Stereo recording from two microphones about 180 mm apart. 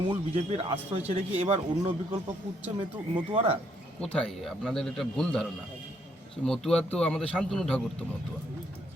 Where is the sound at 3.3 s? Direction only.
30° right (ahead or behind).